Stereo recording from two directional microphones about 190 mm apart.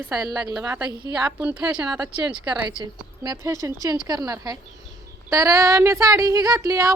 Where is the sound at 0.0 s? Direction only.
15° right (ahead or behind).